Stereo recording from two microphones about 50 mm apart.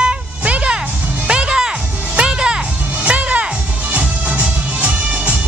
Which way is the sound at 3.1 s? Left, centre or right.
Right.